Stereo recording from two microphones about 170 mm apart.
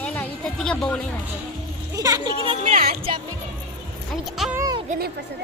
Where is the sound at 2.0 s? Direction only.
20° right (ahead or behind).